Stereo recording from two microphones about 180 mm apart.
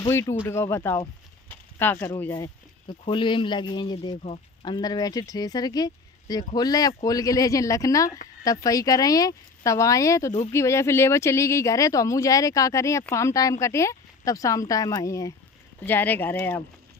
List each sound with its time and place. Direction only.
0.1 s speech: 15° left (ahead or behind)